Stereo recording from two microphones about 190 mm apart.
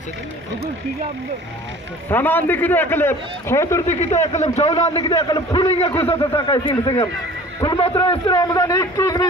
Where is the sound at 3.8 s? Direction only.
35° left (ahead or behind); by 5.6 s 20° left (ahead or behind).